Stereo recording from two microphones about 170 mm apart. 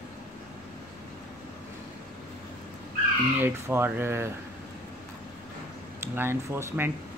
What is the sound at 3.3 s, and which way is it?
Speech, 15° right (ahead or behind).